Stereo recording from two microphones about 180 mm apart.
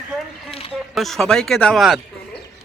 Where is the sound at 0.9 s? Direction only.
Centre (ahead or behind).